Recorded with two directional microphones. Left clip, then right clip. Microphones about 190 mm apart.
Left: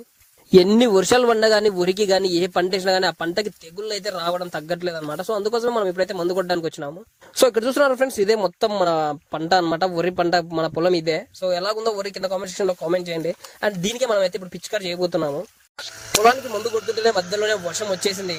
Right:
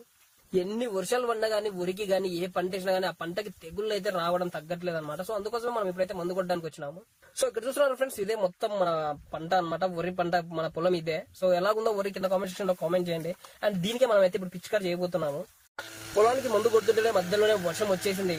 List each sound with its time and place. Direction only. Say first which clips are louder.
0.5 s speech: left 15 dB; 45° left (ahead or behind)
16.5 s speech: even; centre (ahead or behind)
17.1 s speech: left 4 dB; 45° left (ahead or behind)